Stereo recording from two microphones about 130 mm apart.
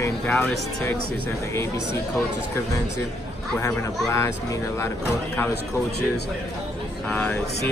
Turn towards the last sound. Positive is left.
turn(degrees=10)  # may be behind; listen again after turning